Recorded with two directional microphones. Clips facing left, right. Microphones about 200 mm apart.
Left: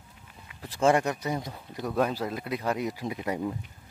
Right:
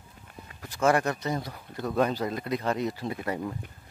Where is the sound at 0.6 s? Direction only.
30° left (ahead or behind).